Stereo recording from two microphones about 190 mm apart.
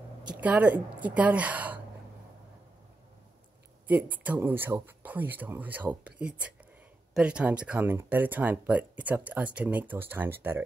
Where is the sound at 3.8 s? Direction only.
10° right (ahead or behind).